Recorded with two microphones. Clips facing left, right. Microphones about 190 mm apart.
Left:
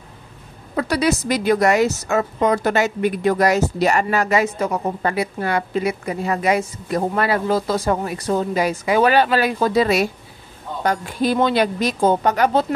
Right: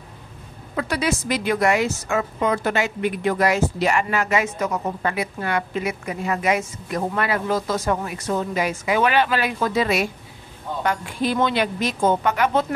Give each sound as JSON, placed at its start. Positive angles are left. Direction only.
{"t": 0.7, "sound": "speech", "side_deg": 35}